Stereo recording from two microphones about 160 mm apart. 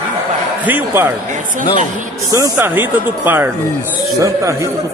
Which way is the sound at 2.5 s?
15° right (ahead or behind).